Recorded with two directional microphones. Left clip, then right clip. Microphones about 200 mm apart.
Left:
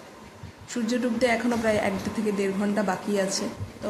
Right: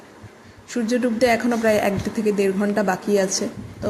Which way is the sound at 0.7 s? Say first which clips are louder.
Right 5 dB; 15° right (ahead or behind).